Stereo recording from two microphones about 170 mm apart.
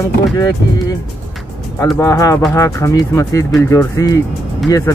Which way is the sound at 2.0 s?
20° left (ahead or behind).